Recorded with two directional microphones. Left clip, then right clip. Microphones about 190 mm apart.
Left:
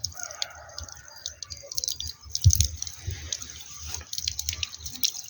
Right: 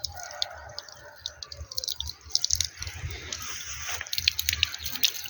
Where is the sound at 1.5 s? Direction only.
35° left (ahead or behind).